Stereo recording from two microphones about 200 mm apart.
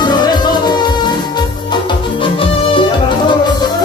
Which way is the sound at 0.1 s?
20° left (ahead or behind).